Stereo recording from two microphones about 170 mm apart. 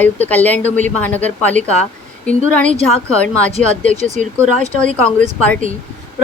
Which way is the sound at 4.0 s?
45° right (ahead or behind).